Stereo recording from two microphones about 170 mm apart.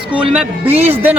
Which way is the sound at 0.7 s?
35° right (ahead or behind).